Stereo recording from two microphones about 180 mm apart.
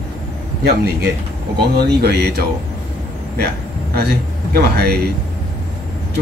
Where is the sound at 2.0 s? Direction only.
65° right (ahead or behind).